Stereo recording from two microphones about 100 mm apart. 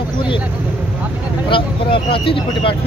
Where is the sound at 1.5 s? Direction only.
60° left (ahead or behind).